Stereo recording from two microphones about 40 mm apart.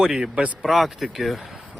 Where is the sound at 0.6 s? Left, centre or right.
Centre.